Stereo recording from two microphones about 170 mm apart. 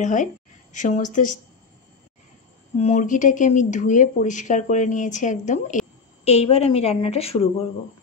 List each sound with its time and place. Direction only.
0.0 s speech: 45° left (ahead or behind)
2.8 s a woman's voice: 45° left (ahead or behind)